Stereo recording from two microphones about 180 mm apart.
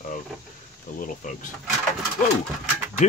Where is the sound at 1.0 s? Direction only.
45° left (ahead or behind).